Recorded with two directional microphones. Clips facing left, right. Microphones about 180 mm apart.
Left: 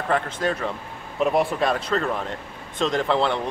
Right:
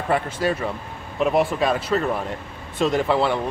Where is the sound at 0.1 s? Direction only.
10° right (ahead or behind).